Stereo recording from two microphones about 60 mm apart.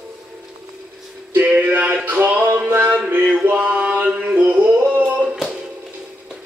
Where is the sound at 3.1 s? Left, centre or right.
Right.